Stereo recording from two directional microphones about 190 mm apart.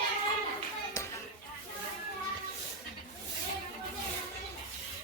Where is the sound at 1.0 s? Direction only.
15° left (ahead or behind).